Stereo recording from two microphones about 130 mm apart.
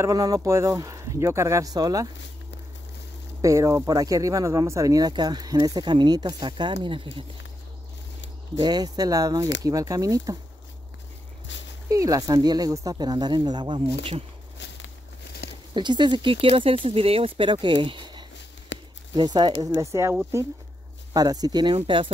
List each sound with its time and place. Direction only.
0.0 s speech: 25° right (ahead or behind)
3.3 s speech: 25° right (ahead or behind); by 7.2 s 40° right (ahead or behind)
8.5 s speech: 30° right (ahead or behind)
11.9 s speech: 25° right (ahead or behind); by 14.1 s 40° right (ahead or behind)
15.7 s speech: 35° right (ahead or behind)
19.7 s speech: 20° right (ahead or behind)
21.1 s speech: 30° right (ahead or behind)